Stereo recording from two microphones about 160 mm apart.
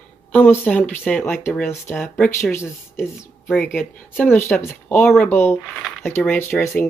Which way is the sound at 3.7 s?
10° left (ahead or behind).